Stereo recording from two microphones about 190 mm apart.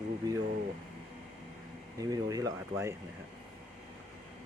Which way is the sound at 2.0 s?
20° right (ahead or behind).